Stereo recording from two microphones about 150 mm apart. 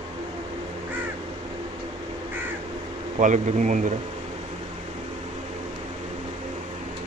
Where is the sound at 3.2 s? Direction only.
55° right (ahead or behind).